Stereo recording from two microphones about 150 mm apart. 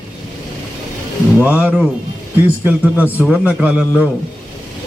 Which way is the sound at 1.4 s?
10° right (ahead or behind).